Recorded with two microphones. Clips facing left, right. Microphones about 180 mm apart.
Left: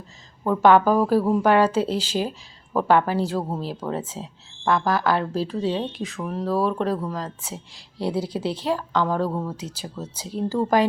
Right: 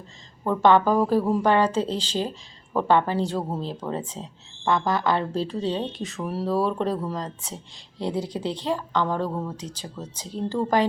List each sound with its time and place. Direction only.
0.4 s a woman's voice: 5° left (ahead or behind)